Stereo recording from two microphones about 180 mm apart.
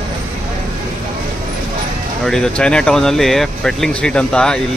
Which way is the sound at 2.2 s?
5° left (ahead or behind).